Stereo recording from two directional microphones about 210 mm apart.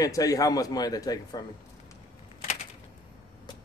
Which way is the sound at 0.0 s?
15° left (ahead or behind).